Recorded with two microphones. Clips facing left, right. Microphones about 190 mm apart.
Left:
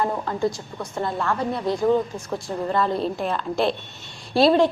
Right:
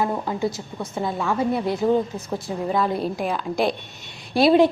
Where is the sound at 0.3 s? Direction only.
5° right (ahead or behind).